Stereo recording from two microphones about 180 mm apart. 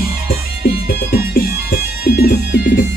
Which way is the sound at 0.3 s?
55° left (ahead or behind).